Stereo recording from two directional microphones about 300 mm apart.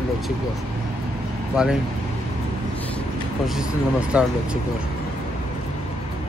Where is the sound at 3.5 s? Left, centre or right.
Centre.